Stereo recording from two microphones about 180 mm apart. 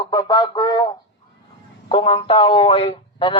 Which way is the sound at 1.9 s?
30° left (ahead or behind).